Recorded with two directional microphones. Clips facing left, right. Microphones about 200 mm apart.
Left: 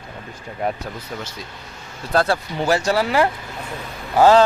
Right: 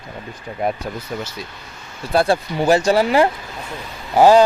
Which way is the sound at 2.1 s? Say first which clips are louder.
Right 2 dB; 10° right (ahead or behind).